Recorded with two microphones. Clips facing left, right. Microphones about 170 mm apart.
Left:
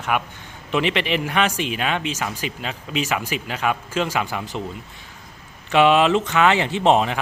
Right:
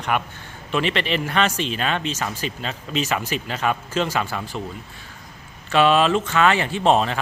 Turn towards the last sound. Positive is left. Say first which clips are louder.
# left 1 dB
turn(degrees=15)  # may be behind; listen again after turning